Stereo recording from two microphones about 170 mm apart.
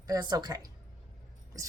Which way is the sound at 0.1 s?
25° right (ahead or behind).